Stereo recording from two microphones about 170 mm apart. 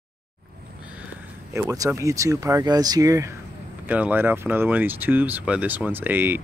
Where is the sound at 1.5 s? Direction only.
20° right (ahead or behind).